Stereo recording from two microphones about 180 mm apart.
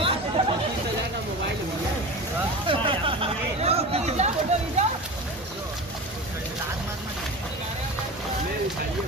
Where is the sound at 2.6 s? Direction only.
30° right (ahead or behind).